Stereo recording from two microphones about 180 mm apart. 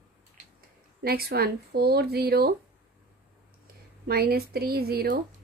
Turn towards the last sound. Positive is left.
turn(degrees=-60)  # may be behind; listen again after turning